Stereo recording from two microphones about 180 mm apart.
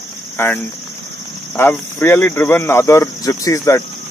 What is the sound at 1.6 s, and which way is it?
Speech, 10° left (ahead or behind).